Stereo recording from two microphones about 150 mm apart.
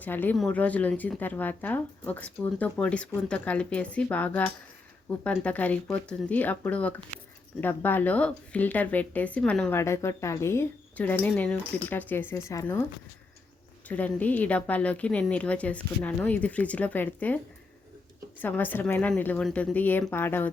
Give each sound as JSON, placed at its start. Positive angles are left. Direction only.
{"t": 0.0, "sound": "speech", "side_deg": 10}
{"t": 13.8, "sound": "speech", "side_deg": 10}